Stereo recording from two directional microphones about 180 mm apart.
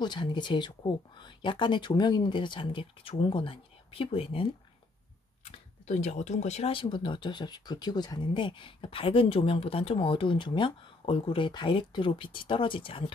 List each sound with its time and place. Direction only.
0.0 s speech: 25° left (ahead or behind)